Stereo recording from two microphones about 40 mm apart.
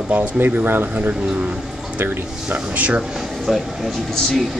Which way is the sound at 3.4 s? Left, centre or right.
Centre.